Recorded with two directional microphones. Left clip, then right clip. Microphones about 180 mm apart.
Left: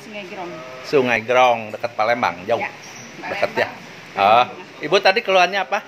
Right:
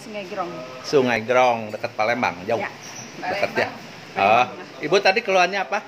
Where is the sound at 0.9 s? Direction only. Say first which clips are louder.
Left 2 dB; 5° right (ahead or behind).